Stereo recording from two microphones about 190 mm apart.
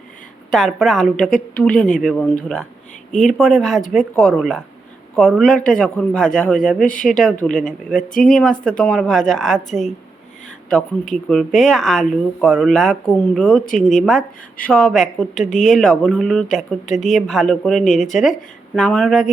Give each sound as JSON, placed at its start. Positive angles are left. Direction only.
{"t": 0.5, "sound": "speech", "side_deg": 0}
{"t": 3.1, "sound": "speech", "side_deg": 40}
{"t": 3.3, "sound": "speech", "side_deg": 0}
{"t": 11.1, "sound": "speech", "side_deg": 0}
{"t": 15.4, "sound": "speech", "side_deg": 40}
{"t": 15.7, "sound": "speech", "side_deg": 5}
{"t": 16.8, "sound": "speech", "side_deg": 40}
{"t": 17.1, "sound": "speech", "side_deg": 0}